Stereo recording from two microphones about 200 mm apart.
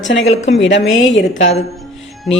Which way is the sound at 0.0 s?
70° left (ahead or behind).